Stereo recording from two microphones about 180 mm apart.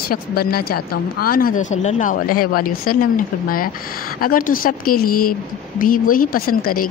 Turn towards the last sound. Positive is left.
turn(degrees=50)  # may be behind; listen again after turning